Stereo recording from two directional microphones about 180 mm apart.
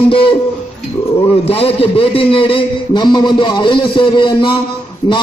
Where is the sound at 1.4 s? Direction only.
30° left (ahead or behind).